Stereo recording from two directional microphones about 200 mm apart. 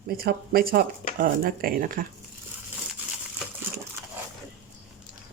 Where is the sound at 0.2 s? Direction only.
50° right (ahead or behind).